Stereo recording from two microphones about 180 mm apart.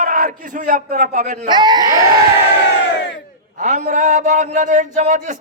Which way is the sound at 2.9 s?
75° left (ahead or behind).